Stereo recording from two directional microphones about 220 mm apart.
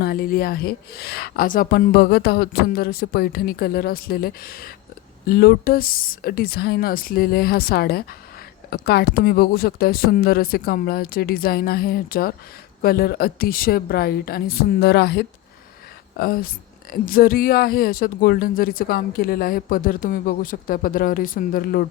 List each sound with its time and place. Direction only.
0.0 s a woman's voice: 45° left (ahead or behind)